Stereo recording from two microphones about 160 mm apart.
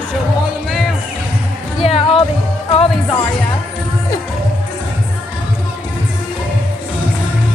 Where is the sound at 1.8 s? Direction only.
35° left (ahead or behind).